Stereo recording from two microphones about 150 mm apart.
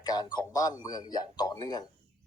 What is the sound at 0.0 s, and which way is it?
Speech, 25° left (ahead or behind).